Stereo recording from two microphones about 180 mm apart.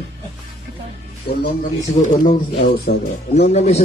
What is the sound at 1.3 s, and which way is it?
Speech, 65° left (ahead or behind).